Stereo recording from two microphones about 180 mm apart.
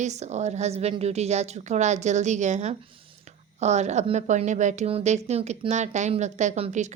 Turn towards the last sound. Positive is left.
turn(degrees=-40)  # may be behind; listen again after turning